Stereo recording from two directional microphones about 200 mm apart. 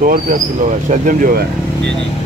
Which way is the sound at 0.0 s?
40° right (ahead or behind).